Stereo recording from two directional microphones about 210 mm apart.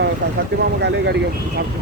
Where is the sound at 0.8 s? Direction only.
55° right (ahead or behind).